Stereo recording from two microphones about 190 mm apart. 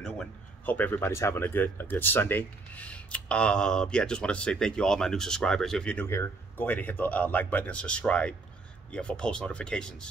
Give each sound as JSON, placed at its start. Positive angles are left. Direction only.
{"t": 0.0, "sound": "speech", "side_deg": 5}